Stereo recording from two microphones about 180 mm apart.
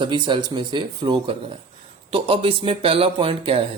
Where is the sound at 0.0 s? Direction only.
25° right (ahead or behind).